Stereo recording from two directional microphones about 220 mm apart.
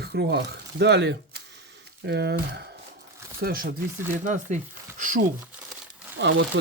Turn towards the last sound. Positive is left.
turn(degrees=-55)  # may be behind; listen again after turning